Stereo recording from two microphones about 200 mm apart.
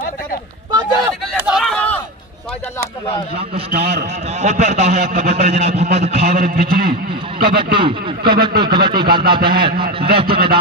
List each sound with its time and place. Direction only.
0.7 s a sound: 20° right (ahead or behind)
1.3 s a sound: 5° right (ahead or behind)
3.7 s a man's voice: 50° right (ahead or behind)
4.3 s a man's voice: 35° right (ahead or behind)
6.2 s a man's voice: 45° right (ahead or behind)
7.4 s a man's voice: 25° right (ahead or behind)
10.2 s a man's voice: 50° right (ahead or behind)